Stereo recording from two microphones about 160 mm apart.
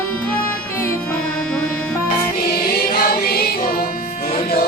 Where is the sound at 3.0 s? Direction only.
70° left (ahead or behind).